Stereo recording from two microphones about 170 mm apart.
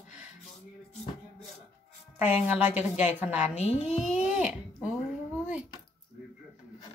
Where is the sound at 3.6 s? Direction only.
40° left (ahead or behind).